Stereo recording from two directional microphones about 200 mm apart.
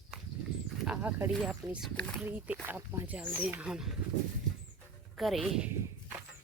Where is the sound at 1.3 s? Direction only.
Centre (ahead or behind).